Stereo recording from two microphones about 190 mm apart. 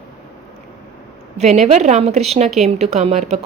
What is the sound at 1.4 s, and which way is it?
A woman's voice, 35° right (ahead or behind).